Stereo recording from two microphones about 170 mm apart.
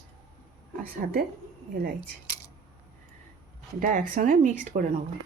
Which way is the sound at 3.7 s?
50° right (ahead or behind).